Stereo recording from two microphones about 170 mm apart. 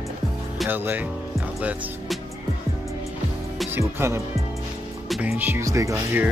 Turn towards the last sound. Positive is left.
turn(degrees=-10)  # may be behind; listen again after turning